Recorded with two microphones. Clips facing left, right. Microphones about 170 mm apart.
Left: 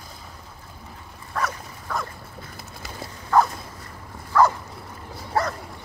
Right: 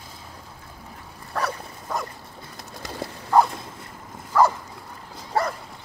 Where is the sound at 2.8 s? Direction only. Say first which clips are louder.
Right 5 dB; 20° right (ahead or behind).